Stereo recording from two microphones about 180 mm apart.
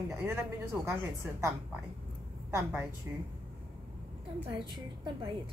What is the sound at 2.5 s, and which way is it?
Speech, 15° right (ahead or behind).